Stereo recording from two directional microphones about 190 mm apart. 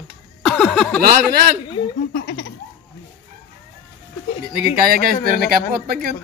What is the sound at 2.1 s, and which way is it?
Speech, 50° left (ahead or behind).